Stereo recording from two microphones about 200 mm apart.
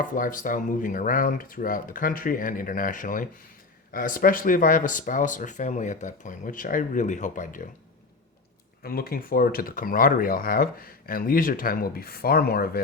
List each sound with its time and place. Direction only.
0.0 s speech: 40° left (ahead or behind)
8.8 s speech: 50° left (ahead or behind)